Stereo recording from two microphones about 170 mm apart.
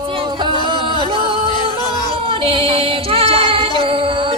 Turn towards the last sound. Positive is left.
turn(degrees=-30)  # may be behind; listen again after turning